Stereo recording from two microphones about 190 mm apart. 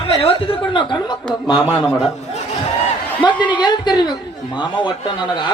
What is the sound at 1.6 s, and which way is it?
Speech, 10° right (ahead or behind).